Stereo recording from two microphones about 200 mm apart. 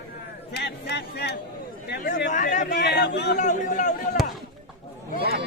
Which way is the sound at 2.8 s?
55° left (ahead or behind).